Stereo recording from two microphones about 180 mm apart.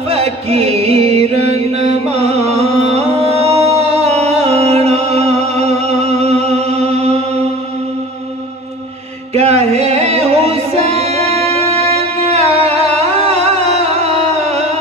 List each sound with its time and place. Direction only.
0.1 s music: 35° right (ahead or behind)
9.3 s music: 35° right (ahead or behind)